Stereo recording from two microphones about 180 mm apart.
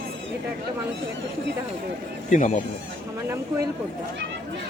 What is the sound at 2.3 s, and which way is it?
Speech, 40° left (ahead or behind).